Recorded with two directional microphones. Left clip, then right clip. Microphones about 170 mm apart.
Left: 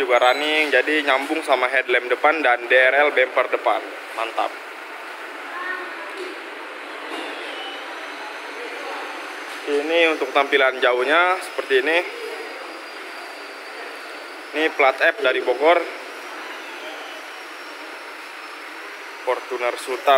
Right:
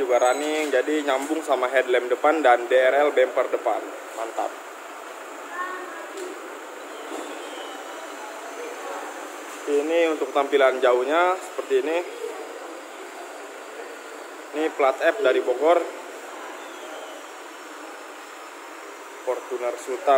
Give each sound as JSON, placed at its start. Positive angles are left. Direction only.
{"t": 0.1, "sound": "speech", "side_deg": -10}
{"t": 9.8, "sound": "speech", "side_deg": -15}
{"t": 14.5, "sound": "speech", "side_deg": -5}
{"t": 19.2, "sound": "speech", "side_deg": -5}